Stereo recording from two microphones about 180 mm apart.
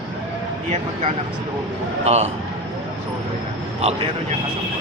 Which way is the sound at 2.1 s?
35° right (ahead or behind).